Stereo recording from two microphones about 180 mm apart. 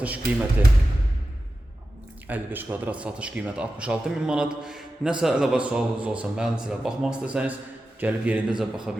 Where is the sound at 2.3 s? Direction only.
10° right (ahead or behind).